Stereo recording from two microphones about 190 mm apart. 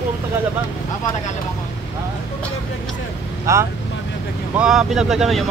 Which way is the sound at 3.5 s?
15° right (ahead or behind).